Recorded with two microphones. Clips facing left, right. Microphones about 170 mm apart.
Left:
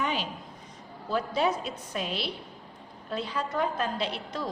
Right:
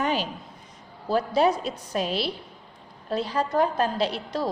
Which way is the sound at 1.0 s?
35° right (ahead or behind).